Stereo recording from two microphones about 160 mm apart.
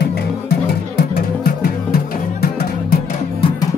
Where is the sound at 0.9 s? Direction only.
75° left (ahead or behind).